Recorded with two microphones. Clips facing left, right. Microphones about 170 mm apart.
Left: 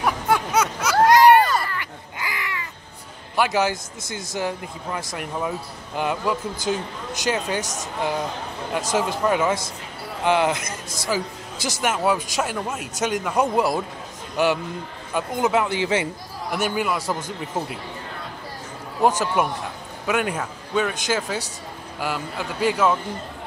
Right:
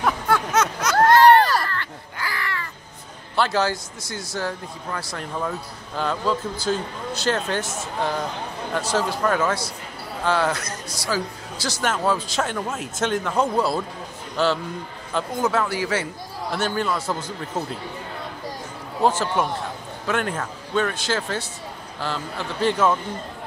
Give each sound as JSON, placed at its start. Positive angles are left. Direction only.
{"t": 0.0, "sound": "a sound", "side_deg": 10}
{"t": 3.3, "sound": "a man's voice", "side_deg": 15}
{"t": 8.9, "sound": "a man's voice", "side_deg": 15}
{"t": 19.0, "sound": "a man's voice", "side_deg": 15}